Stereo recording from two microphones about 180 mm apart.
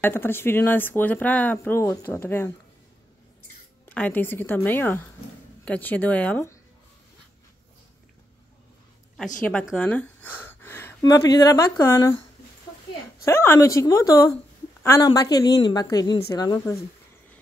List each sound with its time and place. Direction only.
0.0 s speech: 10° left (ahead or behind)
3.9 s speech: 10° left (ahead or behind)
9.4 s speech: 5° left (ahead or behind)
13.2 s a woman's voice: 15° left (ahead or behind)